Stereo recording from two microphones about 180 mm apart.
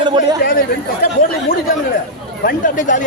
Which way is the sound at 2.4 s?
50° left (ahead or behind).